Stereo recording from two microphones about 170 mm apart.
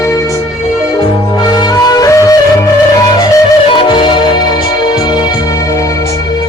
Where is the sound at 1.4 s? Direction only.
20° left (ahead or behind).